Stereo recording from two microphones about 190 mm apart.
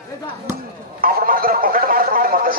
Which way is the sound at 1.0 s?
50° right (ahead or behind).